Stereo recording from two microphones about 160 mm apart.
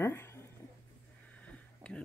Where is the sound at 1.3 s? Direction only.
5° left (ahead or behind).